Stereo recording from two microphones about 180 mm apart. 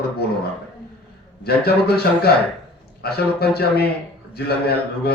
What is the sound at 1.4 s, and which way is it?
A man's voice, 60° left (ahead or behind).